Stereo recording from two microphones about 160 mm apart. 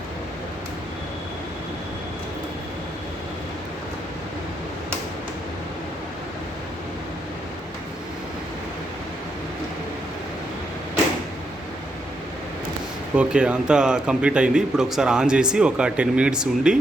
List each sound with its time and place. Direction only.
13.1 s speech: 5° right (ahead or behind)